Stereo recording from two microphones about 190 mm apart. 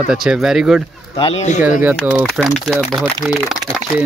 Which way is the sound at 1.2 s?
35° left (ahead or behind).